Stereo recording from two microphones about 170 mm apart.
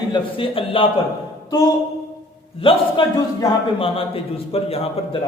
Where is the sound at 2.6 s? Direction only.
30° left (ahead or behind).